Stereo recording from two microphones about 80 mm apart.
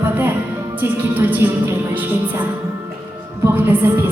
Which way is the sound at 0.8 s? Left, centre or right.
Right.